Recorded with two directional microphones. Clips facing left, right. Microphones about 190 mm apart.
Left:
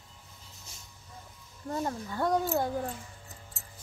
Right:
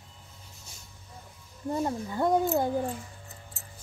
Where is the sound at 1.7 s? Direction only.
20° right (ahead or behind).